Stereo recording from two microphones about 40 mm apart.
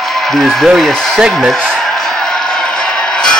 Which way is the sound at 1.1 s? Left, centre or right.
Centre.